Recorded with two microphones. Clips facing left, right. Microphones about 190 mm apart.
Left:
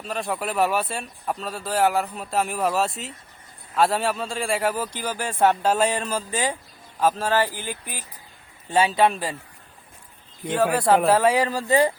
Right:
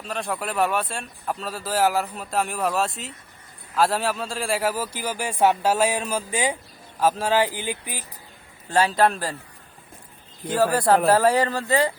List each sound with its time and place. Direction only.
0.0 s speech: centre (ahead or behind); by 8.0 s 15° right (ahead or behind)
8.7 s speech: centre (ahead or behind)
10.4 s speech: centre (ahead or behind)
11.7 s speech: 20° left (ahead or behind)